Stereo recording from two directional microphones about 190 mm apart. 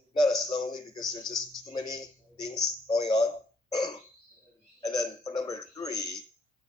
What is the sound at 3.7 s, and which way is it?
Burping, 25° left (ahead or behind).